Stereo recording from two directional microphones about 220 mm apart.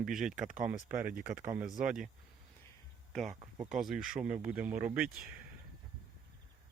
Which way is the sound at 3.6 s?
Centre (ahead or behind).